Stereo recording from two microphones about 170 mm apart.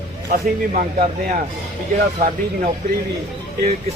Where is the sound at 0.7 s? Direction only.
45° right (ahead or behind).